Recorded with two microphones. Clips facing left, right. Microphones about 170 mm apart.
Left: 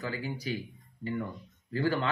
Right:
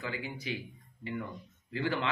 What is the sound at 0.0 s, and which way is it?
Speech, 40° left (ahead or behind).